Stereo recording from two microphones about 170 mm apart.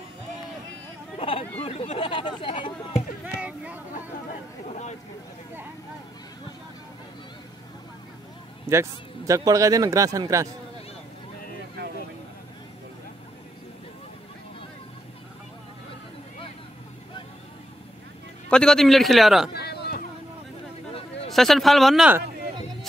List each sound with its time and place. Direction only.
1.1 s chatter: 30° left (ahead or behind)
1.6 s speech: 35° left (ahead or behind)
3.3 s a sound: 5° right (ahead or behind)
8.7 s a man's voice: 15° right (ahead or behind)
18.5 s a man's voice: 5° left (ahead or behind)
19.5 s a sound: 70° left (ahead or behind)
21.3 s a man's voice: centre (ahead or behind)